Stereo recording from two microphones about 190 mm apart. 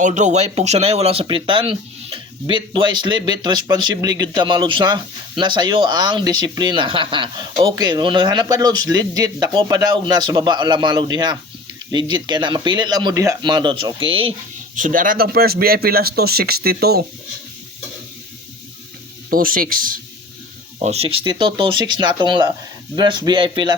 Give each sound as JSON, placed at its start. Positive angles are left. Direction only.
{"t": 0.0, "sound": "speech", "side_deg": -40}
{"t": 14.8, "sound": "speech", "side_deg": -45}
{"t": 19.3, "sound": "speech", "side_deg": -50}
{"t": 20.7, "sound": "speech", "side_deg": -35}